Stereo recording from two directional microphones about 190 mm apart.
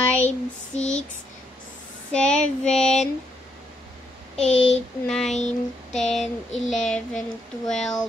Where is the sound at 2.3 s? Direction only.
35° left (ahead or behind).